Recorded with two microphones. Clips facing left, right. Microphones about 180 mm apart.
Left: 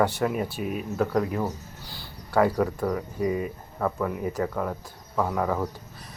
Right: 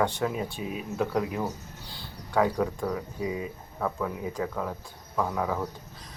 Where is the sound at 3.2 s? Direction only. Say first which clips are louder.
Left 8 dB; 60° left (ahead or behind).